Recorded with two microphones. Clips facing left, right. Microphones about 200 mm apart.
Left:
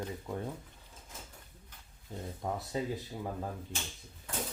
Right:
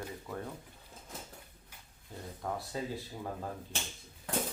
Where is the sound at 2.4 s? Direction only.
20° left (ahead or behind).